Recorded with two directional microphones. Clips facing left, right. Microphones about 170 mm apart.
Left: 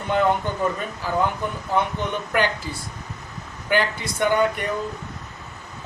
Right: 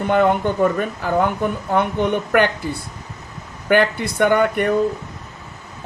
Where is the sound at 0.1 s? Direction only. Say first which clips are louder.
Right 4 dB; 55° right (ahead or behind).